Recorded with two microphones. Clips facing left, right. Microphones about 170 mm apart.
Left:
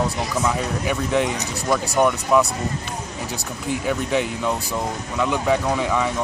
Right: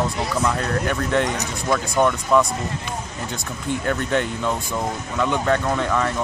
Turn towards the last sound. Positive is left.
turn(degrees=5)  # may be behind; listen again after turning